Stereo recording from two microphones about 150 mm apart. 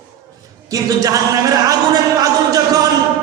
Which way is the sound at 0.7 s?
25° right (ahead or behind).